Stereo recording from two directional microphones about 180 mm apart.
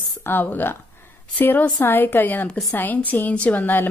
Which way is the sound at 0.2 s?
10° left (ahead or behind).